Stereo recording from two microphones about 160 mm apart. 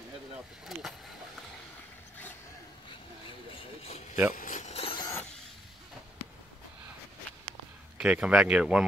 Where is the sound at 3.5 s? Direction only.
35° left (ahead or behind).